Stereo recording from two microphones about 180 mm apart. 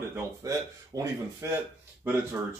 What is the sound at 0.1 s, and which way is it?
Speech, 20° right (ahead or behind).